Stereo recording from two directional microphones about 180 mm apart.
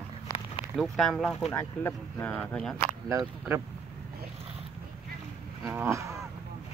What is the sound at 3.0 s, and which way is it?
Speech, 20° right (ahead or behind).